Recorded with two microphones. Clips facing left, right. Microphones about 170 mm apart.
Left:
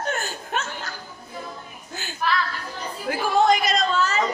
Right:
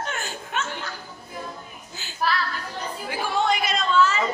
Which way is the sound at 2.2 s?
35° right (ahead or behind).